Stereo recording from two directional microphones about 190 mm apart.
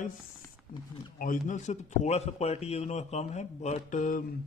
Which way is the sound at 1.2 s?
45° left (ahead or behind).